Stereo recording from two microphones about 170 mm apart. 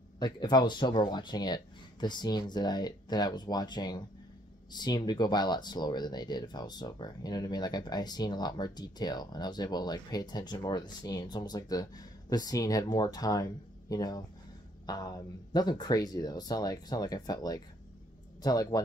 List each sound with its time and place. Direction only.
0.2 s speech: 25° left (ahead or behind)